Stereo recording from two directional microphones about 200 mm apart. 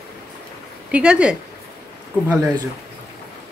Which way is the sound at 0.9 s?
5° right (ahead or behind).